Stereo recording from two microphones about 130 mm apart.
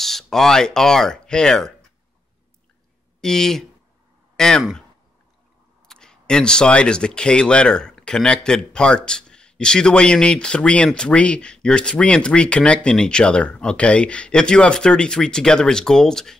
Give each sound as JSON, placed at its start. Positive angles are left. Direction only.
{"t": 0.0, "sound": "speech", "side_deg": 0}
{"t": 3.2, "sound": "speech", "side_deg": 5}
{"t": 5.9, "sound": "speech", "side_deg": 5}